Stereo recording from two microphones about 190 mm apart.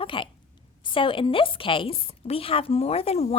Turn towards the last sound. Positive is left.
turn(degrees=35)  # may be behind; listen again after turning